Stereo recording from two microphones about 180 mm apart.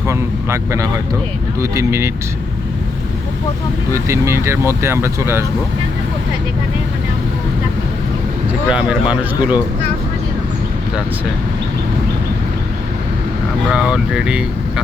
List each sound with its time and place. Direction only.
0.1 s speech: 15° right (ahead or behind)
3.9 s speech: 15° right (ahead or behind)
8.7 s speech: 5° right (ahead or behind)
13.7 s speech: 5° right (ahead or behind)